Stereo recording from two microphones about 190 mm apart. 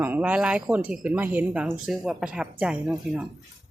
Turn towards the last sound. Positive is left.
turn(degrees=-5)  # may be behind; listen again after turning